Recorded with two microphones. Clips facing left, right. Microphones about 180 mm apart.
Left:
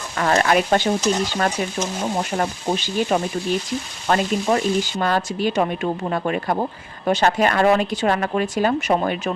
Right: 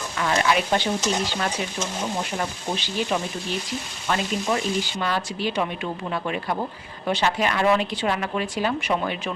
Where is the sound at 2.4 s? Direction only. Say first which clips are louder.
Left 5 dB; 45° left (ahead or behind).